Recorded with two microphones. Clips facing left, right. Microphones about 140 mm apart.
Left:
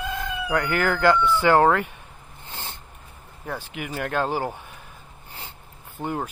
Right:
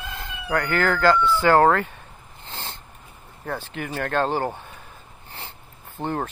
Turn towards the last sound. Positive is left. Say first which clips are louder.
# right 2 dB
turn(degrees=-25)  # may be behind; listen again after turning